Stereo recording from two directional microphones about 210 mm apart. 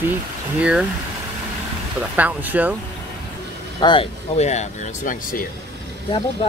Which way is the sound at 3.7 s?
25° left (ahead or behind).